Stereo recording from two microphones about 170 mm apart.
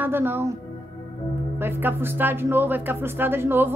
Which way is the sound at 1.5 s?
15° right (ahead or behind).